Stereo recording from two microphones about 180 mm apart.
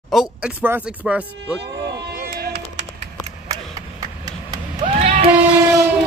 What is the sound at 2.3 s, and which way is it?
Music, 60° right (ahead or behind).